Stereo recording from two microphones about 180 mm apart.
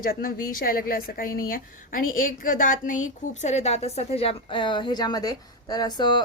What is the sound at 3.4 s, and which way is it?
A woman's voice, 40° left (ahead or behind).